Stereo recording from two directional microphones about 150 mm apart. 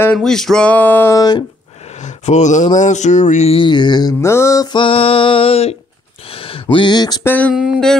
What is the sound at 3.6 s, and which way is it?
Mantra, 30° left (ahead or behind).